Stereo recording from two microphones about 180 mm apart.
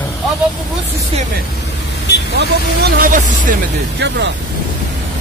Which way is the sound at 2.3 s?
60° right (ahead or behind).